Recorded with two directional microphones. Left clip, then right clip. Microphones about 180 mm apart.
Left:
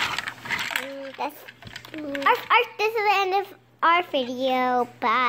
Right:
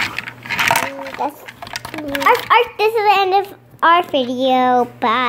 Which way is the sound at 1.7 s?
35° right (ahead or behind).